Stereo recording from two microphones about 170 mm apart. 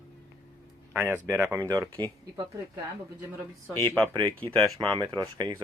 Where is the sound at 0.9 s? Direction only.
10° right (ahead or behind).